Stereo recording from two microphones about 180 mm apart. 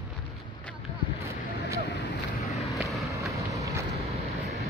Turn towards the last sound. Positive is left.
turn(degrees=-15)  # may be behind; listen again after turning